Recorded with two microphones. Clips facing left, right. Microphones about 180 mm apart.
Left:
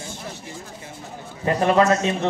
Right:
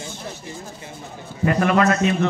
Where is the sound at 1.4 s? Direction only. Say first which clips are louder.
Even; 30° left (ahead or behind).